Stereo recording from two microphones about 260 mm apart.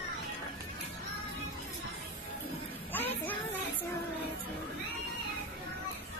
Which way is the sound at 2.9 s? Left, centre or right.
Centre.